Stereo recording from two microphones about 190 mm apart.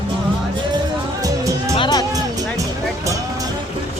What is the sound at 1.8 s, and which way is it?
Music, 20° left (ahead or behind).